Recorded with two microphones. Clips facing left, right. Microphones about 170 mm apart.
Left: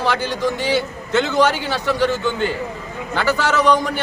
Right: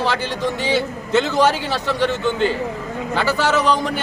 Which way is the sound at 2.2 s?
30° right (ahead or behind).